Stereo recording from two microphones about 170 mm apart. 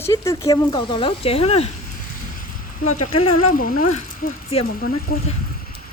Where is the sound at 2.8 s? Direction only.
50° left (ahead or behind).